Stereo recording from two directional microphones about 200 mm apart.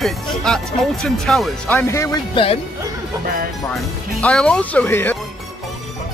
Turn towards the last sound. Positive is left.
turn(degrees=10)  # may be behind; listen again after turning